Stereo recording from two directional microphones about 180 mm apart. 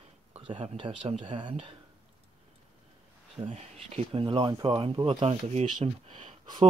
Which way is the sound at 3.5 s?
35° right (ahead or behind).